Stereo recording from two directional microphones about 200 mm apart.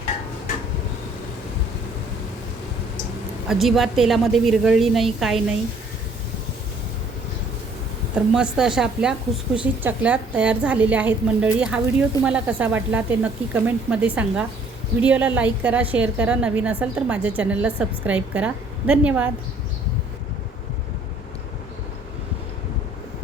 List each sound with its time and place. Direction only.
3.5 s a woman's voice: centre (ahead or behind)
8.1 s a woman's voice: 5° right (ahead or behind)